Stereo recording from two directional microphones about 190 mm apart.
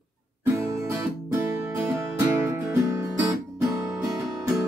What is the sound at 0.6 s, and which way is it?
Music, 15° right (ahead or behind).